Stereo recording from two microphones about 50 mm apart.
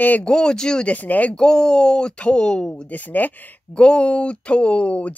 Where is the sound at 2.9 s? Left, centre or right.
Left.